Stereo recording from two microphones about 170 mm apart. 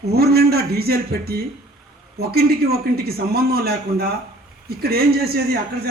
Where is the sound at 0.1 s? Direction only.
65° right (ahead or behind).